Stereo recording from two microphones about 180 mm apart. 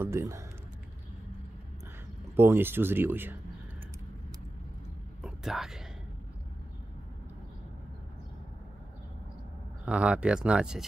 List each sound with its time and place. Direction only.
0.0 s speech: 15° right (ahead or behind)
2.3 s speech: 15° right (ahead or behind)
5.2 s whispering: centre (ahead or behind)
9.8 s speech: 5° right (ahead or behind)